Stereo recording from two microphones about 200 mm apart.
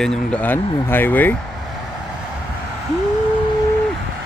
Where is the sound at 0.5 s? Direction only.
30° left (ahead or behind).